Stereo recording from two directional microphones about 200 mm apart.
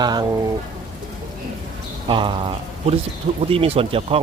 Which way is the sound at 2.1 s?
25° right (ahead or behind).